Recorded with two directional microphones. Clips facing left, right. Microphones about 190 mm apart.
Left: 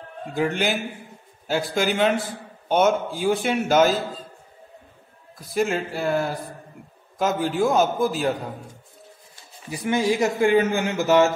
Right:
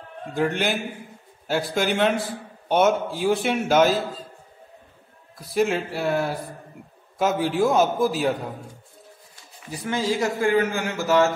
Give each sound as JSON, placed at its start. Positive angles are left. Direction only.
{"t": 0.3, "sound": "a man's voice", "side_deg": 5}
{"t": 5.4, "sound": "a man's voice", "side_deg": 0}
{"t": 9.7, "sound": "a man's voice", "side_deg": 15}